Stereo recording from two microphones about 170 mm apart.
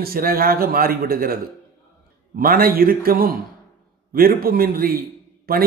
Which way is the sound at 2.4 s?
60° right (ahead or behind).